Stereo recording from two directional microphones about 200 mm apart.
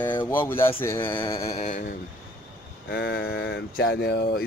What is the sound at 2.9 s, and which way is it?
Speech, 60° left (ahead or behind).